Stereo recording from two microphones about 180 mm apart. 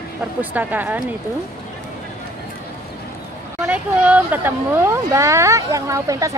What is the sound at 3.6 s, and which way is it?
Speech, 10° right (ahead or behind).